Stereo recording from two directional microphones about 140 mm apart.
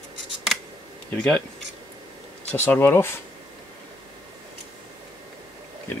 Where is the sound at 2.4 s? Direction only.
15° left (ahead or behind).